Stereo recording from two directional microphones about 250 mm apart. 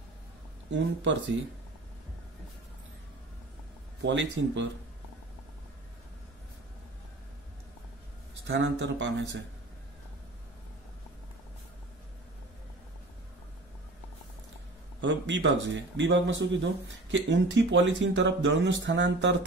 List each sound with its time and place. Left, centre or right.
0.7 s speech: right
4.0 s speech: right
8.5 s speech: right
15.0 s speech: right